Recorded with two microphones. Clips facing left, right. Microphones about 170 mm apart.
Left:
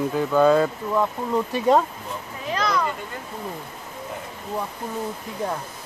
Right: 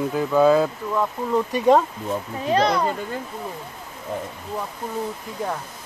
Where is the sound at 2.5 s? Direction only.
35° right (ahead or behind).